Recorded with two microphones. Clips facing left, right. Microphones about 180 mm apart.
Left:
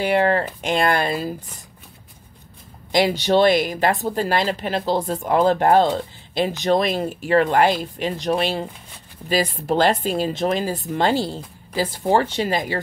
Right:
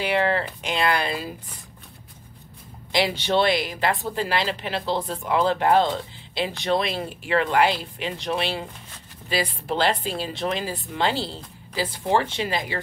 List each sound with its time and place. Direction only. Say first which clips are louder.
0.0 s speech: left 4 dB; 45° left (ahead or behind)
2.9 s speech: left 5 dB; 45° left (ahead or behind)